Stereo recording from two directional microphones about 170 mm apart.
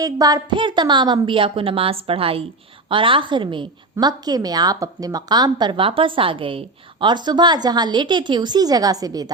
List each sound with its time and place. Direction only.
0.0 s a woman's voice: 20° right (ahead or behind)